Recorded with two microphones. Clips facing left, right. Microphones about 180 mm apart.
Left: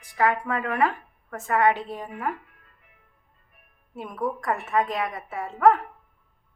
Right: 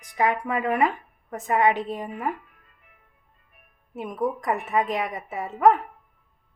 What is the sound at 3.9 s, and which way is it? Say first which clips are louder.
A woman's voice: right 2 dB; 20° right (ahead or behind).